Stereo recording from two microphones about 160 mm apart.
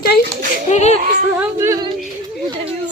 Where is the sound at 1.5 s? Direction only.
20° right (ahead or behind).